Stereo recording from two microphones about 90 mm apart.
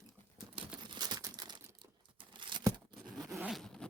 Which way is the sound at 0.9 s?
50° right (ahead or behind).